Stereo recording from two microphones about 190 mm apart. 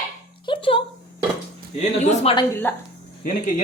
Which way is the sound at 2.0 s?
30° left (ahead or behind).